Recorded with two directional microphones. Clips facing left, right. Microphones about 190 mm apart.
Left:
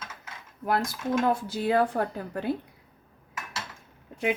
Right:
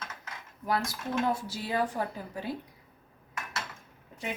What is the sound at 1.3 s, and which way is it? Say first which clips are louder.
Speech: left 6 dB; 60° left (ahead or behind).